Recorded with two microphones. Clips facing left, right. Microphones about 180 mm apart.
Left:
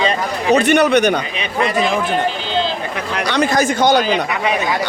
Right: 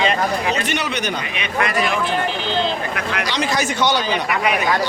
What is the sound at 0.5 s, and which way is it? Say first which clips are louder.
Speech: left 11 dB; 55° left (ahead or behind).